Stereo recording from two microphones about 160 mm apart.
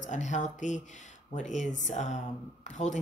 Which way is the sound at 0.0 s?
50° left (ahead or behind).